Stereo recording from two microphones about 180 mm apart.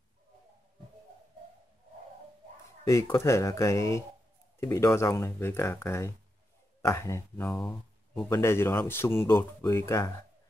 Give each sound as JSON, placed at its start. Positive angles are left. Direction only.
{"t": 2.9, "sound": "speech", "side_deg": 15}
{"t": 7.5, "sound": "speech", "side_deg": 5}